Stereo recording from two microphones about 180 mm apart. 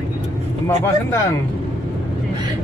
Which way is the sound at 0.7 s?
15° left (ahead or behind).